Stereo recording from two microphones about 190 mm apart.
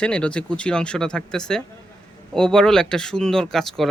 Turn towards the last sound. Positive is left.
turn(degrees=0)  # may be behind; listen again after turning